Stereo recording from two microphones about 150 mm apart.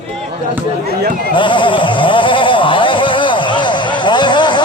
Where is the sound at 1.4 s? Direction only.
35° left (ahead or behind).